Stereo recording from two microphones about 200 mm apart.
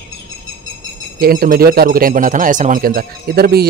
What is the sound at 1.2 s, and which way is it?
Speech, 45° right (ahead or behind).